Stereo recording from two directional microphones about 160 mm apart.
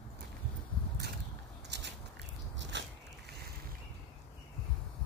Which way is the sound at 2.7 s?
90° right.